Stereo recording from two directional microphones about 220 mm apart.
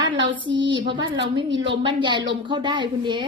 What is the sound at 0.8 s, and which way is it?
Speech, 20° right (ahead or behind).